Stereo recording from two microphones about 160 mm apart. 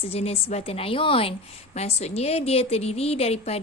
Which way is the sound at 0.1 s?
40° left (ahead or behind).